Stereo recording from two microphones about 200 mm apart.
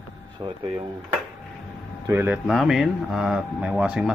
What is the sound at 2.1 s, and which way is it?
Speech, 10° right (ahead or behind).